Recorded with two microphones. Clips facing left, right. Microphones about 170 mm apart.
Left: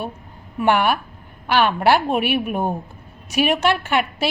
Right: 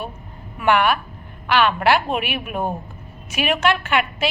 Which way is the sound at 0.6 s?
40° left (ahead or behind).